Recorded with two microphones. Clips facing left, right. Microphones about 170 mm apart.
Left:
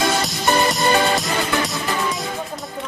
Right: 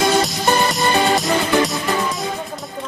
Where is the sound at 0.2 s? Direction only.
Centre (ahead or behind).